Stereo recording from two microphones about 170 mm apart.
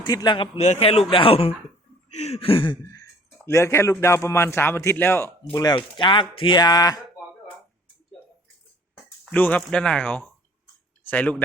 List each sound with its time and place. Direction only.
0.0 s a man's voice: 25° left (ahead or behind)
2.8 s a sound: 20° left (ahead or behind)
3.4 s a man's voice: 15° left (ahead or behind)
9.2 s a man's voice: 10° left (ahead or behind)